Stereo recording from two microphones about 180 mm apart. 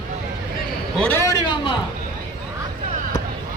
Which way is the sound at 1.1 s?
15° left (ahead or behind).